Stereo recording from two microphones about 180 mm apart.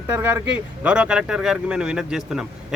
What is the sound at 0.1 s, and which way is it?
Speech, 10° right (ahead or behind).